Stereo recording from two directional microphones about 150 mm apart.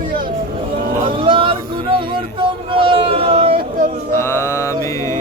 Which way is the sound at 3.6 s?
70° right (ahead or behind).